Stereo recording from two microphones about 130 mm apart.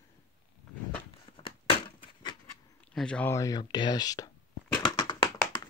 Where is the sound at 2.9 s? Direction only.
5° left (ahead or behind).